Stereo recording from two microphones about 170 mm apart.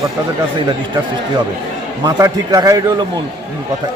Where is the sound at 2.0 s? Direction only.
25° right (ahead or behind).